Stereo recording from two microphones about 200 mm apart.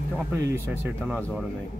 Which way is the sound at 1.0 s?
Centre (ahead or behind).